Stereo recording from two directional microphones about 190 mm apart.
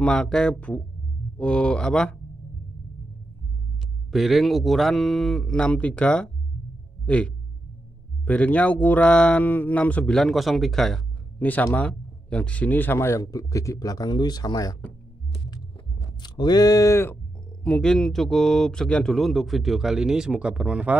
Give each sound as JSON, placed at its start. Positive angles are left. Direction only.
{"t": 0.0, "sound": "speech", "side_deg": 5}
{"t": 4.1, "sound": "speech", "side_deg": 0}
{"t": 16.0, "sound": "speech", "side_deg": 20}